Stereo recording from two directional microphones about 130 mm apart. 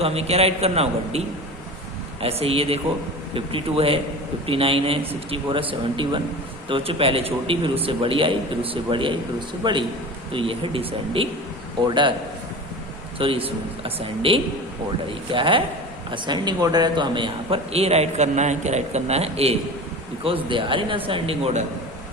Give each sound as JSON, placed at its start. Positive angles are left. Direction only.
{"t": 0.0, "sound": "a man's voice", "side_deg": -50}
{"t": 2.2, "sound": "a man's voice", "side_deg": -50}
{"t": 13.1, "sound": "a man's voice", "side_deg": -45}
{"t": 20.2, "sound": "a man's voice", "side_deg": -40}